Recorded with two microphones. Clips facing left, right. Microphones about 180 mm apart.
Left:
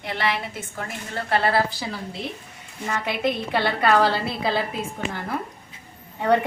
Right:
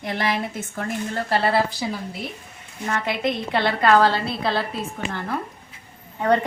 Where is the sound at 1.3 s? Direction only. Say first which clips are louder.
Even; 30° right (ahead or behind).